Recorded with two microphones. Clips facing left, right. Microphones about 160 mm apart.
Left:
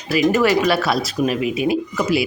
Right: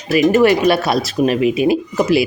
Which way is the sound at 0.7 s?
20° right (ahead or behind).